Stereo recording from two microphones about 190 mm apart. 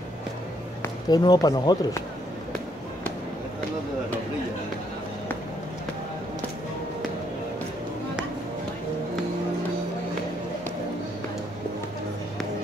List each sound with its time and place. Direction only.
0.8 s speech: 20° left (ahead or behind)